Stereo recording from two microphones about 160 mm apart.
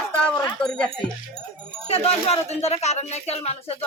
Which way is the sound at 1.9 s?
40° left (ahead or behind).